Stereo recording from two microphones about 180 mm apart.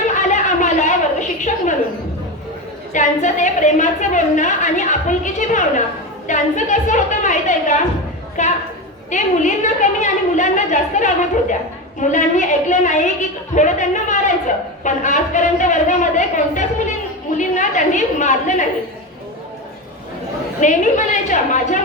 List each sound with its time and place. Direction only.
0.1 s a sound: 45° left (ahead or behind)
2.9 s a woman's voice: 45° left (ahead or behind)
20.6 s a woman's voice: 45° left (ahead or behind)